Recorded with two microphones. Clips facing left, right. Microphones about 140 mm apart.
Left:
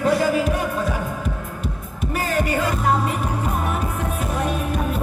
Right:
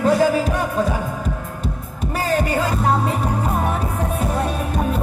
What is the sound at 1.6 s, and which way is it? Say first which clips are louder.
Music: right 2 dB; 40° right (ahead or behind).